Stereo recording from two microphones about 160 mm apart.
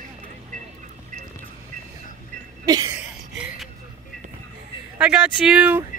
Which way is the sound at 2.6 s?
25° right (ahead or behind).